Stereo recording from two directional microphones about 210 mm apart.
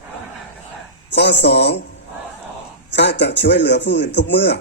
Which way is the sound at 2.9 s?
55° left (ahead or behind).